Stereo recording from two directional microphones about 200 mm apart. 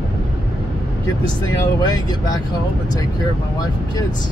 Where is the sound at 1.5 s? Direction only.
20° left (ahead or behind).